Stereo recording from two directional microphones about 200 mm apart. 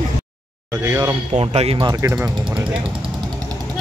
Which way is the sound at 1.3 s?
30° right (ahead or behind).